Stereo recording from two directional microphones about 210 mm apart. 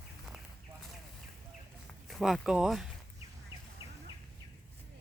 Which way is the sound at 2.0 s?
Centre (ahead or behind).